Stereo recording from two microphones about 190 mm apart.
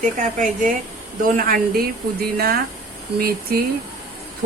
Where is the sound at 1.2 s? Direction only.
50° right (ahead or behind).